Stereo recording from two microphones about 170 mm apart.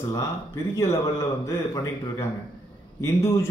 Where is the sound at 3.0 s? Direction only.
15° left (ahead or behind).